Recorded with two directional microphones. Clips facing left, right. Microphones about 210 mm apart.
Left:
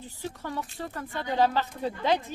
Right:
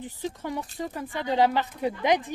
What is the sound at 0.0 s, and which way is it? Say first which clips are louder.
Speech: right 4 dB; 15° right (ahead or behind).